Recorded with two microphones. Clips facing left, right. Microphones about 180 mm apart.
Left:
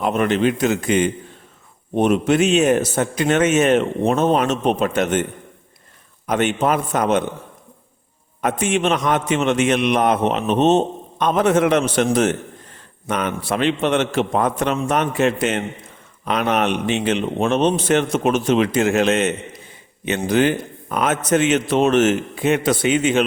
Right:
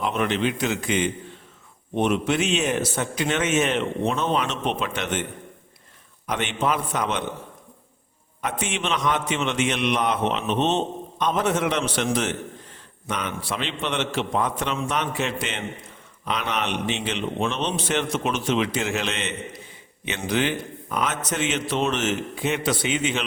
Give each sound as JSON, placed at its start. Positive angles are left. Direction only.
{"t": 0.0, "sound": "a man's voice", "side_deg": 45}
{"t": 6.2, "sound": "a man's voice", "side_deg": 45}
{"t": 8.4, "sound": "a man's voice", "side_deg": 50}